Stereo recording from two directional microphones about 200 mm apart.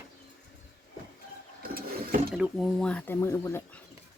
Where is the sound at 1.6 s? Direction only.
50° right (ahead or behind).